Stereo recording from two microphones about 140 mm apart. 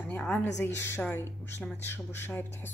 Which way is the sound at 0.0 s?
10° left (ahead or behind).